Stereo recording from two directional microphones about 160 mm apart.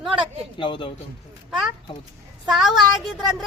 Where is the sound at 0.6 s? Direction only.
30° left (ahead or behind).